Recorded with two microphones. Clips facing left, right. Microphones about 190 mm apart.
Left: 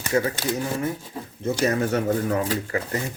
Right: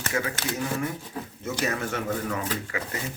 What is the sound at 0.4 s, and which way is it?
Speech, 5° left (ahead or behind).